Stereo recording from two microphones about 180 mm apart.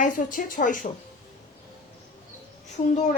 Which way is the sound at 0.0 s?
45° left (ahead or behind).